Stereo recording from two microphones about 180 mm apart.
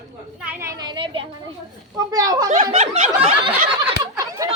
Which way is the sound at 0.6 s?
25° right (ahead or behind).